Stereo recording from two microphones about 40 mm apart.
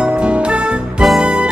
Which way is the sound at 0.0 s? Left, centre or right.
Right.